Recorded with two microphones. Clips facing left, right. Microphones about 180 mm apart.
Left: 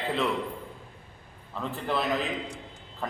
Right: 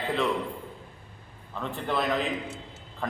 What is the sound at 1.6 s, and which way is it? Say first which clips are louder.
Speech: right 1 dB; centre (ahead or behind).